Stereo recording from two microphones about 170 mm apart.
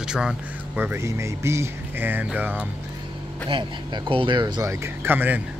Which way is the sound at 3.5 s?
30° right (ahead or behind).